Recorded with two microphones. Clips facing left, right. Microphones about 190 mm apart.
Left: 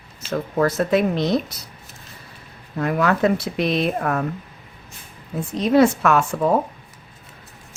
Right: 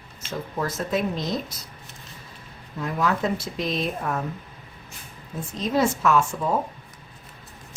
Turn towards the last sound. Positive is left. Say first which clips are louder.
# left 3 dB
turn(degrees=65)  # may be behind; listen again after turning